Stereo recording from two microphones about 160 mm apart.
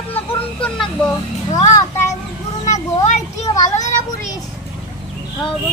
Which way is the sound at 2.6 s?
50° left (ahead or behind).